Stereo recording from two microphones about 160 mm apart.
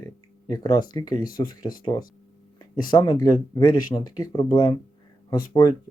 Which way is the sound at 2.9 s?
25° left (ahead or behind).